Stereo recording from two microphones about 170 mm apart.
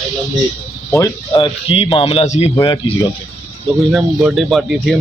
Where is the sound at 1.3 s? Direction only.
35° left (ahead or behind).